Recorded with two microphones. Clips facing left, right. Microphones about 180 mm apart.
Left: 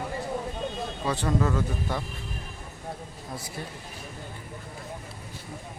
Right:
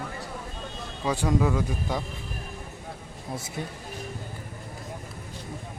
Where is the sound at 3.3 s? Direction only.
25° right (ahead or behind).